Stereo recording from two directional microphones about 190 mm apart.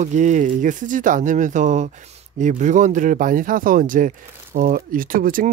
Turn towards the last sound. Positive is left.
turn(degrees=-45)  # may be behind; listen again after turning